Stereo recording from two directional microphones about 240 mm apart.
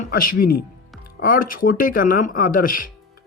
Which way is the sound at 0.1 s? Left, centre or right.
Left.